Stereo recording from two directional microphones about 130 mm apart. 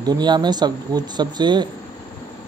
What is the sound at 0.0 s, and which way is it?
Speech, 35° right (ahead or behind).